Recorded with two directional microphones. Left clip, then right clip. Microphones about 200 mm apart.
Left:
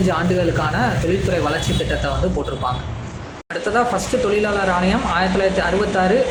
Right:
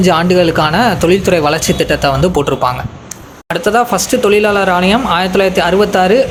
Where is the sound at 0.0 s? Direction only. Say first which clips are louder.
Right 9 dB; 45° right (ahead or behind).